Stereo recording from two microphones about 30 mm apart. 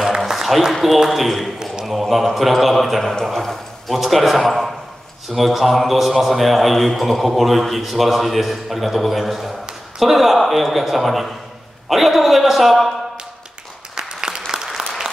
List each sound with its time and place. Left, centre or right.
0.3 s a sound: centre
1.1 s a man's voice: centre
3.9 s a man's voice: centre
13.9 s applause: right